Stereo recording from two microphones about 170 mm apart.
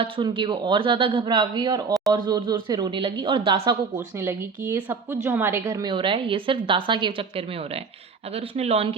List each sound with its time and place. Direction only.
0.0 s a woman's voice: 30° right (ahead or behind)
3.9 s a woman's voice: 15° right (ahead or behind); by 9.0 s 35° right (ahead or behind)